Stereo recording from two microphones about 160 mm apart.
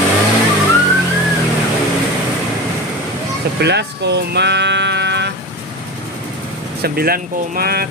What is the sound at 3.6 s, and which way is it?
Speech, 90° right.